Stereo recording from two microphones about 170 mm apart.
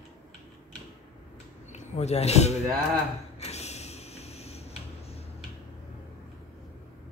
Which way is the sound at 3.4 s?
40° left (ahead or behind).